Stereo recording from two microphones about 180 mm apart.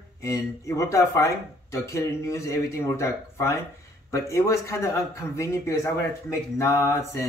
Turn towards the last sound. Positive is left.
turn(degrees=15)  # may be behind; listen again after turning